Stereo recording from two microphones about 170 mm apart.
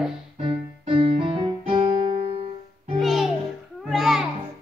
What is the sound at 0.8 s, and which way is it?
Music, 30° right (ahead or behind).